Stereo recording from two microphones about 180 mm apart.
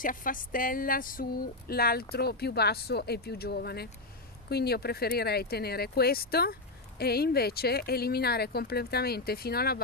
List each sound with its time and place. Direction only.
0.0 s speech: 50° left (ahead or behind)